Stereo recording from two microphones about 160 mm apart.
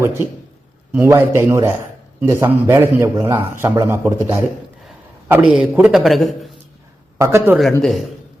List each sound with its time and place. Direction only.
0.0 s a man's voice: 15° right (ahead or behind)
5.3 s a man's voice: 10° right (ahead or behind)
7.2 s a man's voice: 15° right (ahead or behind)
7.8 s a man's voice: centre (ahead or behind)